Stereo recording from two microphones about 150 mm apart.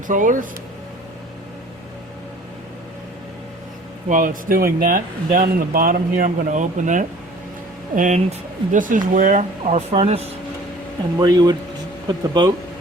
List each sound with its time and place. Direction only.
0.1 s speech: 60° right (ahead or behind)
4.1 s speech: 65° right (ahead or behind); by 10.2 s 40° right (ahead or behind)
11.2 s speech: 25° right (ahead or behind)